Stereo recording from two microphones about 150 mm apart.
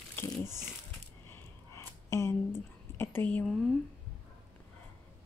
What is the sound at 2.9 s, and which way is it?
Speech, 15° left (ahead or behind).